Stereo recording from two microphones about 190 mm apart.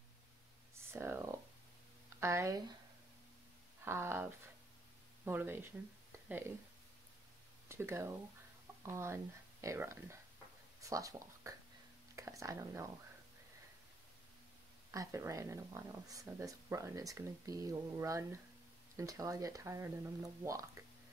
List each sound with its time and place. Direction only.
0.9 s speech: 15° right (ahead or behind)
3.8 s speech: 15° right (ahead or behind)
7.6 s speech: 15° right (ahead or behind)
14.9 s speech: 15° right (ahead or behind)